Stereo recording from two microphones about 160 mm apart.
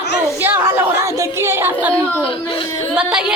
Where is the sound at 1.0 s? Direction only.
15° right (ahead or behind).